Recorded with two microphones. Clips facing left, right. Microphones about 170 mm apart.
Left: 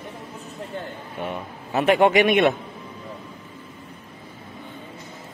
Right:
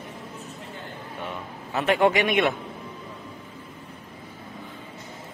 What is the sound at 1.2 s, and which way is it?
A man's voice, 15° left (ahead or behind).